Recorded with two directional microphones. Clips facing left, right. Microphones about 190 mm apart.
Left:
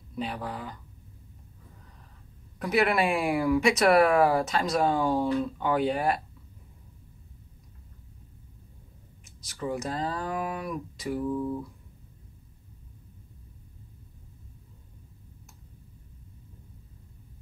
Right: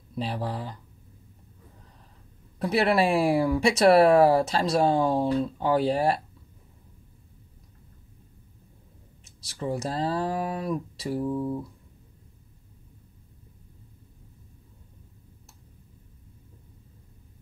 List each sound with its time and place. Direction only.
0.1 s speech: 30° right (ahead or behind)
2.6 s speech: 30° right (ahead or behind)
9.2 s speech: 30° right (ahead or behind)